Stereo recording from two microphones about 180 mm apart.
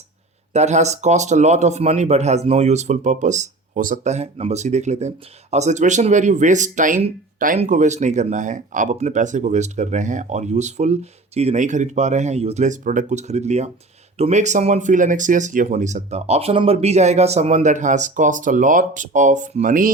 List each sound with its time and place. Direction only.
0.5 s speech: 40° right (ahead or behind)